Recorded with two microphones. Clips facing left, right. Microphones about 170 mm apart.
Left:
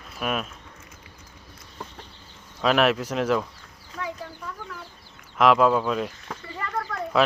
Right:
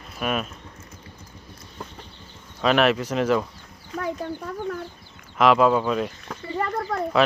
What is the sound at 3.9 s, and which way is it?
Speech, 55° right (ahead or behind).